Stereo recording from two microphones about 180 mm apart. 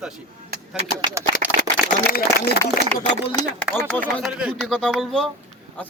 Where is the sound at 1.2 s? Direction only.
15° right (ahead or behind).